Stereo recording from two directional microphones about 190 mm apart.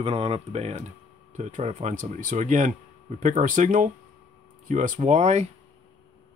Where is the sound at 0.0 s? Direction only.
30° right (ahead or behind).